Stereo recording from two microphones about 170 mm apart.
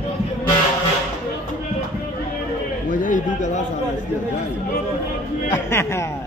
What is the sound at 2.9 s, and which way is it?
Speech, 50° left (ahead or behind).